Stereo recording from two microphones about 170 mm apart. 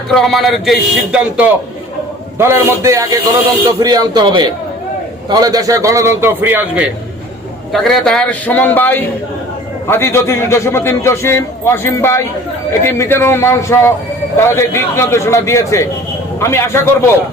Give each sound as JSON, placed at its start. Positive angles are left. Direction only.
{"t": 0.1, "sound": "a man's voice", "side_deg": 0}
{"t": 7.7, "sound": "a man's voice", "side_deg": 0}